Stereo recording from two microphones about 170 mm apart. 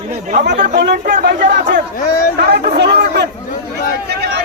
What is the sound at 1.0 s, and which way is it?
Speech, 55° right (ahead or behind).